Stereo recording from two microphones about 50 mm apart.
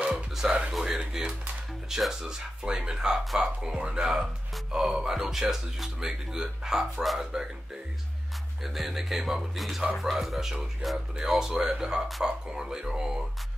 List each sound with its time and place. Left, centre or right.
0.0 s music: centre
0.7 s speech: centre
8.6 s music: centre
11.2 s speech: centre